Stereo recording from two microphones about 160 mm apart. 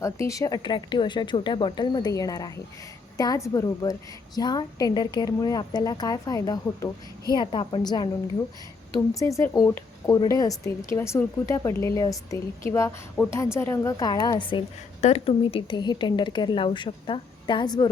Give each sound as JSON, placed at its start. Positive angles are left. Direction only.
{"t": 0.0, "sound": "a woman's voice", "side_deg": 20}